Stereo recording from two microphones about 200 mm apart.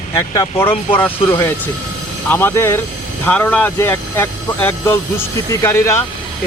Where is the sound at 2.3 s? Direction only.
10° left (ahead or behind).